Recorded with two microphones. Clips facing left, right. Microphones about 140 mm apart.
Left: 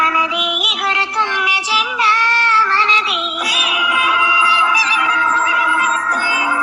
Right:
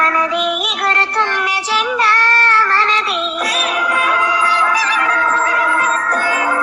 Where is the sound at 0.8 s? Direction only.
50° right (ahead or behind).